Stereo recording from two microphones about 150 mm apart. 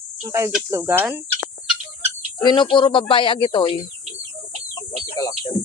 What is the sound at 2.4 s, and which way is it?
Speech, 30° left (ahead or behind).